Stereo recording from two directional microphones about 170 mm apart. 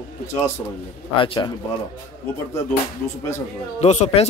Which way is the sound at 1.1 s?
30° left (ahead or behind).